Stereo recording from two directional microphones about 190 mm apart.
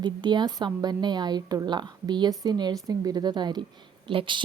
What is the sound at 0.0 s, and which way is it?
A woman's voice, 25° right (ahead or behind).